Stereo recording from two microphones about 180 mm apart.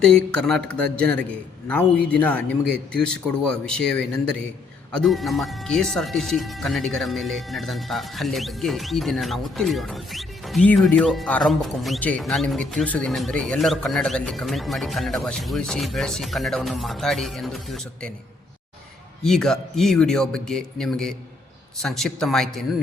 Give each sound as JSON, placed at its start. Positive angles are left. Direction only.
{"t": 0.0, "sound": "speech", "side_deg": 5}
{"t": 19.2, "sound": "speech", "side_deg": 5}